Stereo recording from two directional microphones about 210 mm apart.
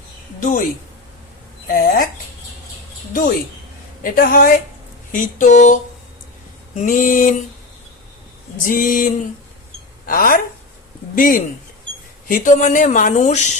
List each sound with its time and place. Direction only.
0.3 s a woman's voice: 40° left (ahead or behind)
1.6 s speech: 40° left (ahead or behind)
3.1 s speech: 40° left (ahead or behind)
8.6 s speech: 40° left (ahead or behind)